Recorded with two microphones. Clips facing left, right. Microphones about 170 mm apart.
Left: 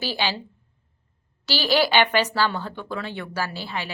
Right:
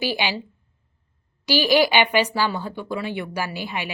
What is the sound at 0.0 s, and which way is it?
Speech, 15° right (ahead or behind).